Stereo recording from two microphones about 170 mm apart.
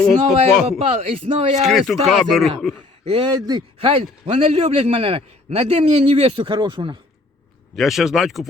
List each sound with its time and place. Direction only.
0.0 s speech: 5° left (ahead or behind)
1.1 s a man's voice: 40° right (ahead or behind)
1.6 s speech: centre (ahead or behind)
3.0 s a man's voice: 35° right (ahead or behind)
7.8 s speech: centre (ahead or behind)